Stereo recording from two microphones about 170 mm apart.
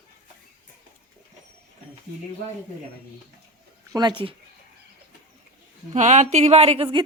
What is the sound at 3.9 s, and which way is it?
Speech, 25° right (ahead or behind).